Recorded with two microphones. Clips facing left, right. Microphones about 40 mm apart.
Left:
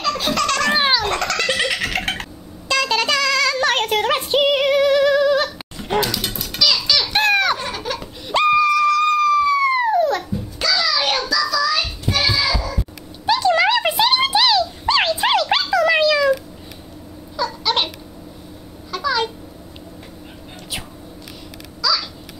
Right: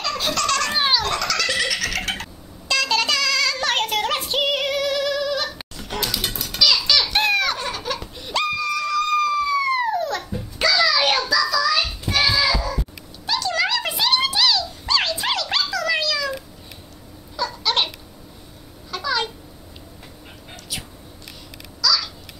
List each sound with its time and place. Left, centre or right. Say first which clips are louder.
0.0 s baby laughter: left 3 dB; centre
0.7 s baby laughter: left 4 dB; centre
1.0 s baby laughter: left 2 dB; left
2.7 s child singing: left 2 dB; centre
5.9 s baby laughter: left 5 dB; centre
8.3 s a sound: left 7 dB; left
8.5 s dog: left 8 dB; centre
10.3 s music: right 1 dB; centre
13.3 s dog: left 7 dB; left
17.4 s babbling: left 2 dB; centre
21.8 s babbling: left 1 dB; centre